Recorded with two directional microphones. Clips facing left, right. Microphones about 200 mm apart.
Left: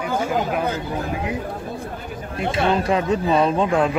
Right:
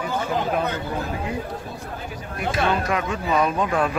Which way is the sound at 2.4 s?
25° left (ahead or behind).